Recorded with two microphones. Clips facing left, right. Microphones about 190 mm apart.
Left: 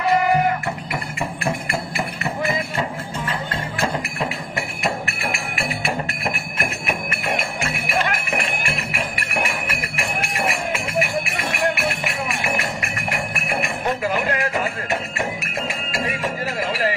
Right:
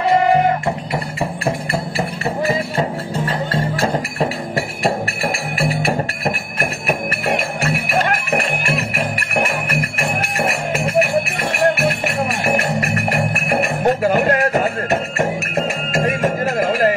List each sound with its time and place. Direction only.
0.0 s music: 30° right (ahead or behind)
1.4 s music: 35° right (ahead or behind)